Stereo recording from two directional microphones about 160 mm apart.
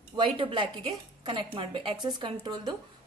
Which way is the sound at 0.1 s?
30° right (ahead or behind).